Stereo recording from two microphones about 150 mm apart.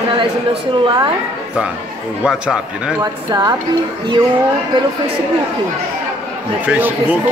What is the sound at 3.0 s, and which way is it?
Speech, 25° right (ahead or behind).